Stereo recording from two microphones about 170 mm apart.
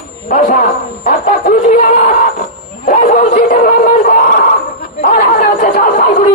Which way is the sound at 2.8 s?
55° left (ahead or behind).